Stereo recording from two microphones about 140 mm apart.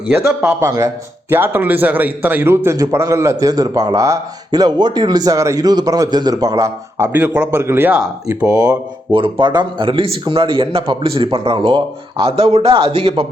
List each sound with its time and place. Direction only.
0.1 s a man's voice: 15° right (ahead or behind)
8.4 s a man's voice: 25° right (ahead or behind); by 13.2 s 45° right (ahead or behind)